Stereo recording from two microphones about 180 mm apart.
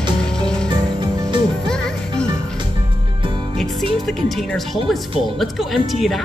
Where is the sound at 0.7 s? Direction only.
25° right (ahead or behind).